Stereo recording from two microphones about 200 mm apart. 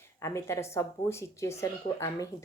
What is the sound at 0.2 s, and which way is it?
Speech, 15° left (ahead or behind).